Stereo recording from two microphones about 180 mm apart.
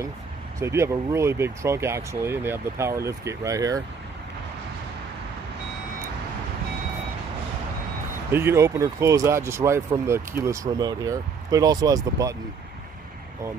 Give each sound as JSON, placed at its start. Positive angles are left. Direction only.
{"t": 0.6, "sound": "speech", "side_deg": -15}
{"t": 8.3, "sound": "speech", "side_deg": -15}